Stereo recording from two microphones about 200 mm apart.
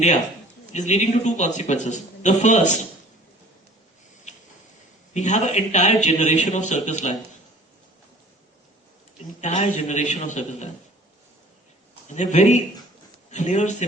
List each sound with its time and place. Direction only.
0.7 s a man's voice: 35° left (ahead or behind)
5.1 s a man's voice: 35° left (ahead or behind)
9.4 s a man's voice: 35° left (ahead or behind)
12.0 s a man's voice: 35° left (ahead or behind)